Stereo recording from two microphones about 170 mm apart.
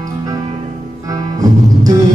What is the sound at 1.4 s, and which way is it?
Music, 20° right (ahead or behind).